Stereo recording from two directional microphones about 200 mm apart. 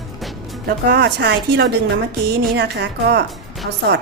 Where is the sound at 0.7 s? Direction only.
55° right (ahead or behind).